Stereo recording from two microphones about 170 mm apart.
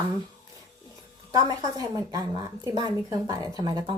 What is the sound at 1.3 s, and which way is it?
A woman's voice, 20° right (ahead or behind).